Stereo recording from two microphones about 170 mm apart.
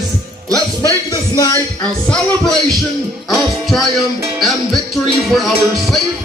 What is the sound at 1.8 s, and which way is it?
Music, 5° left (ahead or behind).